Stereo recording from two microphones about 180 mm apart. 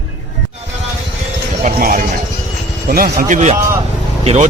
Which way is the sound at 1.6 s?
50° right (ahead or behind).